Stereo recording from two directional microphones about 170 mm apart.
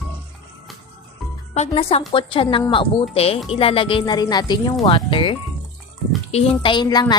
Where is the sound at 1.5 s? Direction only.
35° left (ahead or behind).